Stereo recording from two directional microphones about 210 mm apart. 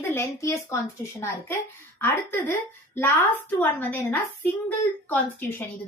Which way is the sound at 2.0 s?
10° left (ahead or behind).